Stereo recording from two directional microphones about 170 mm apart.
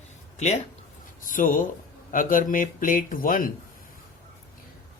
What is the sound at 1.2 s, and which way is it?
Speech, 50° left (ahead or behind).